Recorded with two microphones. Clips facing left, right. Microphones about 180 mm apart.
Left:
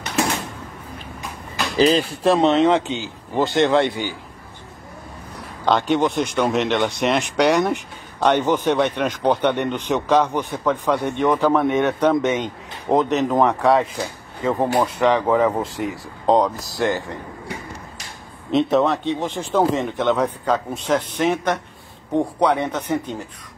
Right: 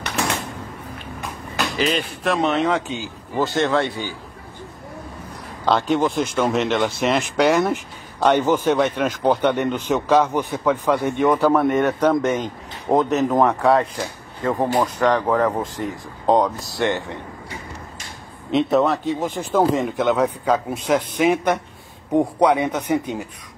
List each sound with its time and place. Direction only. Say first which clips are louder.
1.8 s speech: left 8 dB; 35° left (ahead or behind)
5.7 s speech: even; centre (ahead or behind)
18.5 s a man's voice: even; centre (ahead or behind)